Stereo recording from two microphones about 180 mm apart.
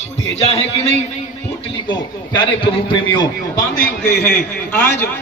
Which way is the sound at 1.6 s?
25° left (ahead or behind).